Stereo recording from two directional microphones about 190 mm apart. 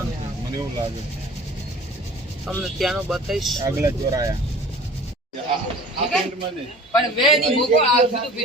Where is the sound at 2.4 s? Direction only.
Centre (ahead or behind).